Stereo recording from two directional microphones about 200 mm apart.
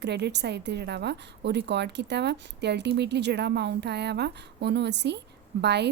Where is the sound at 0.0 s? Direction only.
60° right (ahead or behind).